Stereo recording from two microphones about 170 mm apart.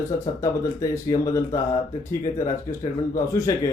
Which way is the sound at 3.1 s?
20° left (ahead or behind).